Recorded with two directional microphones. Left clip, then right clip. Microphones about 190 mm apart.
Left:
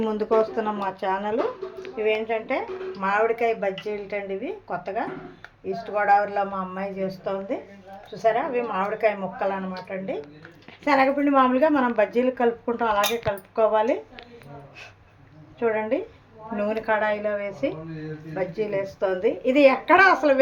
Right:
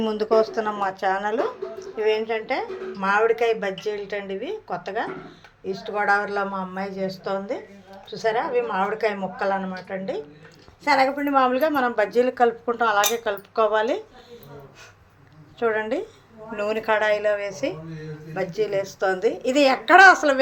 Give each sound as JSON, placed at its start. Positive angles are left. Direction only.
{"t": 0.0, "sound": "a woman's voice", "side_deg": 0}
{"t": 15.5, "sound": "a woman's voice", "side_deg": 5}